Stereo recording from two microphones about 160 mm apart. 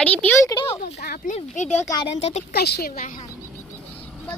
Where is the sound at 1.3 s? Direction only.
50° left (ahead or behind).